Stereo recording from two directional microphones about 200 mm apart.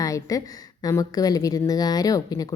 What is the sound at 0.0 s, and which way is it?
A woman's voice, 15° left (ahead or behind).